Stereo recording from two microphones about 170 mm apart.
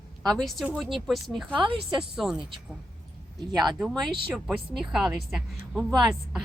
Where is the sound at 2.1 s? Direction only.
5° right (ahead or behind).